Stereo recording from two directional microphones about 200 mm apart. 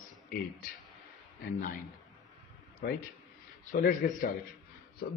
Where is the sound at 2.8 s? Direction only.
50° left (ahead or behind).